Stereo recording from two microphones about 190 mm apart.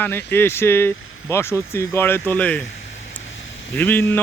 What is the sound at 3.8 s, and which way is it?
Speech, 10° left (ahead or behind).